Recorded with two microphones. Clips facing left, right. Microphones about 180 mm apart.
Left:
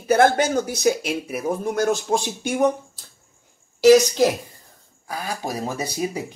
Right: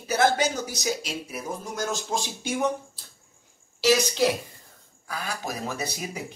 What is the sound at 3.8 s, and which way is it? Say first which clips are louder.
Speech: left 8 dB; 45° left (ahead or behind).